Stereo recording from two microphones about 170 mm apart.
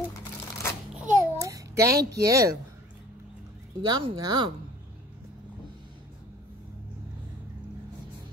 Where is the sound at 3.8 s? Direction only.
30° right (ahead or behind).